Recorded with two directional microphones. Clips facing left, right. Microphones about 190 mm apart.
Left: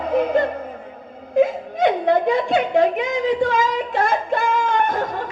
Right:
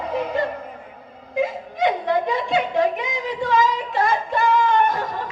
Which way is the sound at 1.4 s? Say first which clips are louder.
Left 5 dB; 55° left (ahead or behind).